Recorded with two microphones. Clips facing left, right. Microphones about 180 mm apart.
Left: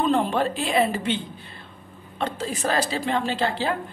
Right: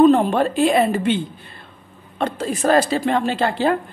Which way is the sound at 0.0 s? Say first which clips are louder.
Right 8 dB; 50° right (ahead or behind).